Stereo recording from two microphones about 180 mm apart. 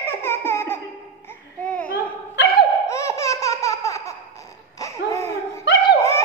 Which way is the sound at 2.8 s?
15° left (ahead or behind).